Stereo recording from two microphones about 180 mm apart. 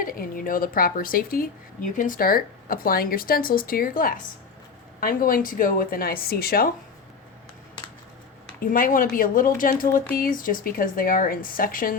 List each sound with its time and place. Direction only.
0.0 s speech: 50° left (ahead or behind)
8.6 s speech: 50° left (ahead or behind)